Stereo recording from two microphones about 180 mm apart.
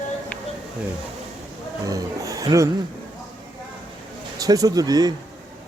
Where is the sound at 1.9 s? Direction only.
20° right (ahead or behind).